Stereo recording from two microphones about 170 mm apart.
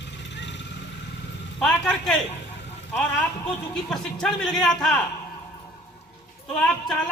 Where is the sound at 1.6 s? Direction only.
5° left (ahead or behind).